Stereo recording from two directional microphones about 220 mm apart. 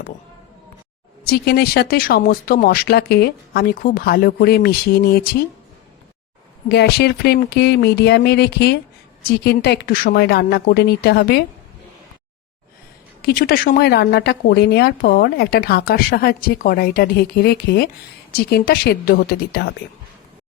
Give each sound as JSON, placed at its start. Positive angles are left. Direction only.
{"t": 1.2, "sound": "speech", "side_deg": 45}
{"t": 6.7, "sound": "speech", "side_deg": 50}
{"t": 13.2, "sound": "speech", "side_deg": 45}